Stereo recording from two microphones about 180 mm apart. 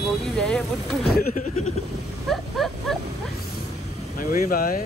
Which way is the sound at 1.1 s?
45° left (ahead or behind).